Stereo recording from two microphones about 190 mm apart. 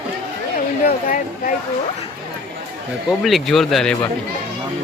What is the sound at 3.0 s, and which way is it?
Speech, centre (ahead or behind).